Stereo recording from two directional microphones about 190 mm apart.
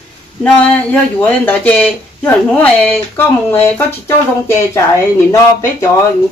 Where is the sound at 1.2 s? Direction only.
10° left (ahead or behind).